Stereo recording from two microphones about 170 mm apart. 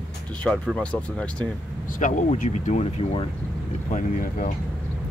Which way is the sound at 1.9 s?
50° left (ahead or behind).